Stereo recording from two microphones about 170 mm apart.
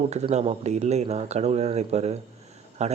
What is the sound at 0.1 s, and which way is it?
Speech, 40° right (ahead or behind).